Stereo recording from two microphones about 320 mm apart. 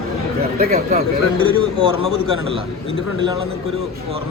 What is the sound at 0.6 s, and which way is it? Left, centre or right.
Speech, right.